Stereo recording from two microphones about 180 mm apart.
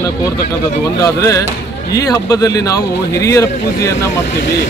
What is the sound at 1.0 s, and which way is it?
Speech, 15° left (ahead or behind).